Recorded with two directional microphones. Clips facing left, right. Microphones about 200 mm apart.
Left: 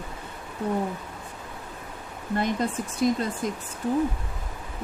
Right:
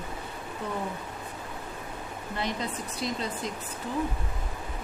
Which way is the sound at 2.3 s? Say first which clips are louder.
Left 7 dB; 50° left (ahead or behind).